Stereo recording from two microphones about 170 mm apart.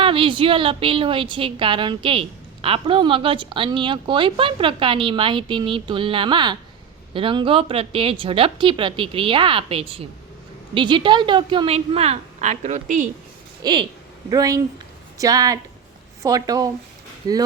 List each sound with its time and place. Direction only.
0.0 s a woman's voice: 30° right (ahead or behind); by 13.1 s 45° right (ahead or behind)
13.6 s a woman's voice: 25° right (ahead or behind)